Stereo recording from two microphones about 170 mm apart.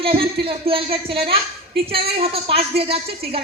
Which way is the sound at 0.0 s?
35° right (ahead or behind).